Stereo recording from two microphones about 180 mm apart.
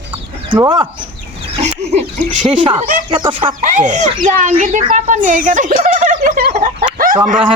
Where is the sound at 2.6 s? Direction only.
30° right (ahead or behind).